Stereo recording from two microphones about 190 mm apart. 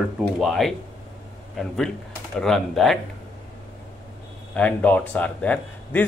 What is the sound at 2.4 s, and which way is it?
Speech, centre (ahead or behind).